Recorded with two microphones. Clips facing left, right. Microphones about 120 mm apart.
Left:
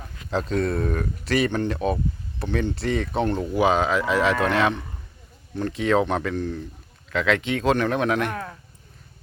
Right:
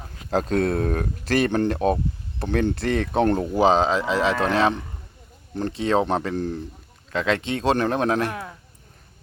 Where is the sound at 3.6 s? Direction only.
30° right (ahead or behind).